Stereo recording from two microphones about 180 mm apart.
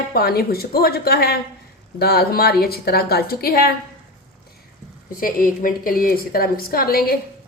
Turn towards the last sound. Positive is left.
turn(degrees=55)  # may be behind; listen again after turning